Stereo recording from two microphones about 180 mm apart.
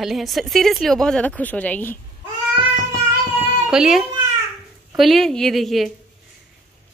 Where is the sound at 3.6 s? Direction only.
5° right (ahead or behind).